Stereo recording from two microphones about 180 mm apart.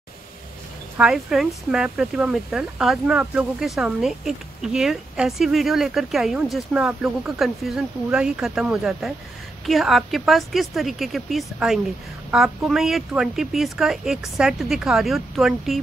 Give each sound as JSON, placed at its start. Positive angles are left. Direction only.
{"t": 0.9, "sound": "speech", "side_deg": -5}